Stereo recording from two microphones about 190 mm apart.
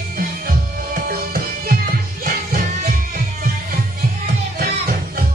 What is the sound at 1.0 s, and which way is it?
Music, 50° right (ahead or behind).